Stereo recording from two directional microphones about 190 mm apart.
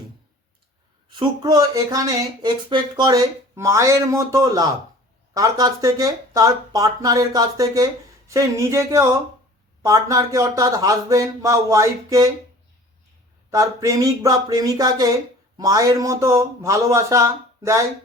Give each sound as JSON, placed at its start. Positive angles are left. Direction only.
{"t": 1.1, "sound": "speech", "side_deg": -20}
{"t": 13.5, "sound": "speech", "side_deg": -15}